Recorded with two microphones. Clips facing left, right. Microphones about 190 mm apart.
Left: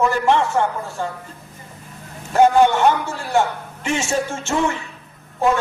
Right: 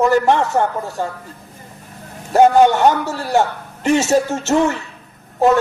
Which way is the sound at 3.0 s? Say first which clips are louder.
Right 2 dB; 40° right (ahead or behind).